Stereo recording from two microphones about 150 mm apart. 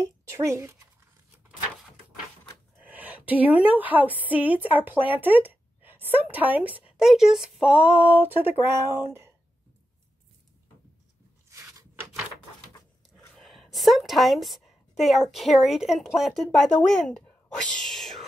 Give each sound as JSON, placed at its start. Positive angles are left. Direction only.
{"t": 0.0, "sound": "speech", "side_deg": -20}
{"t": 2.8, "sound": "a woman's voice", "side_deg": -10}
{"t": 11.5, "sound": "a sound", "side_deg": -20}
{"t": 13.4, "sound": "a woman's voice", "side_deg": 0}